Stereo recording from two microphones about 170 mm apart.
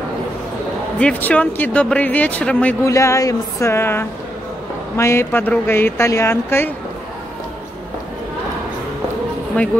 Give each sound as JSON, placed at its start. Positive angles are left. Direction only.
{"t": 0.9, "sound": "speech", "side_deg": 5}